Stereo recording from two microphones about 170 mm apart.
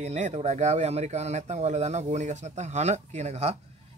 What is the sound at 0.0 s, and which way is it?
Speech, 40° right (ahead or behind).